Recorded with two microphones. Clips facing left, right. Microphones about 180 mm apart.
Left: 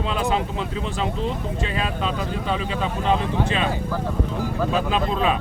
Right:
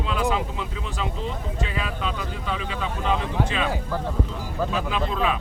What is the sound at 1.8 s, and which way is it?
Speech, 30° left (ahead or behind).